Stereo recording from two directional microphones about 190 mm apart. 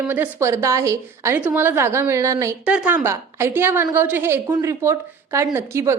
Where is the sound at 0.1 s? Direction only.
10° right (ahead or behind).